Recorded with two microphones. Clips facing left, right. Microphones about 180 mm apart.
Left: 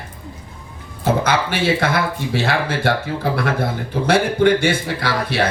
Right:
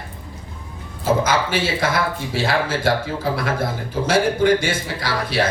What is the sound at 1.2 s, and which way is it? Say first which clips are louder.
A man's voice: left 2 dB; 60° left (ahead or behind).